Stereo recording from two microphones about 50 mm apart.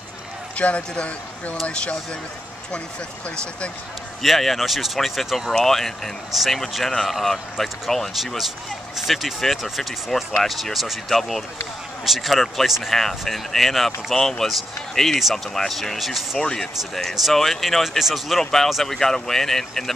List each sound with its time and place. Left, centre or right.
0.6 s speech: left
4.2 s speech: centre
5.5 s speech: centre
16.3 s speech: centre